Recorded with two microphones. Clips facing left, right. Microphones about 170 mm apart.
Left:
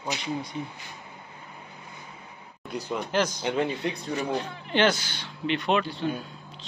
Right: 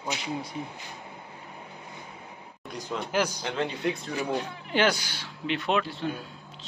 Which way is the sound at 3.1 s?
10° right (ahead or behind).